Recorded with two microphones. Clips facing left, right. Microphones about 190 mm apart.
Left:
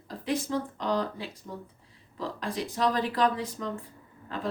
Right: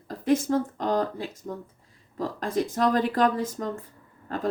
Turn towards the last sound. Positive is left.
turn(degrees=-45)  # may be behind; listen again after turning